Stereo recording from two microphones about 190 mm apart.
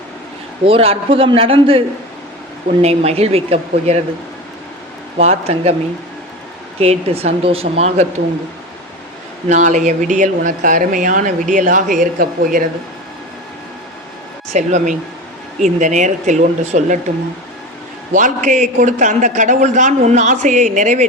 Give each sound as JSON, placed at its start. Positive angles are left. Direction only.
{"t": 0.6, "sound": "a man's voice", "side_deg": -30}
{"t": 2.8, "sound": "speech", "side_deg": -35}
{"t": 5.1, "sound": "speech", "side_deg": -35}
{"t": 6.7, "sound": "speech", "side_deg": -35}
{"t": 9.5, "sound": "speech", "side_deg": -40}
{"t": 14.5, "sound": "speech", "side_deg": -40}
{"t": 18.1, "sound": "speech", "side_deg": -40}